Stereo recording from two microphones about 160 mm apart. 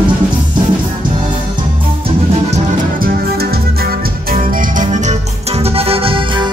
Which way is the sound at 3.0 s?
70° right (ahead or behind).